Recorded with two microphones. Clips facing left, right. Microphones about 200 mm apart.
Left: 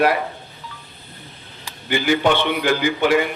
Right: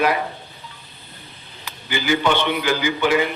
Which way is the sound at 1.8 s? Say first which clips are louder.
Left 2 dB; 55° left (ahead or behind).